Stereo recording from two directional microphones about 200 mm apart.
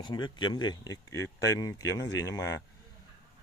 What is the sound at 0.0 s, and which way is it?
Speech, 20° left (ahead or behind).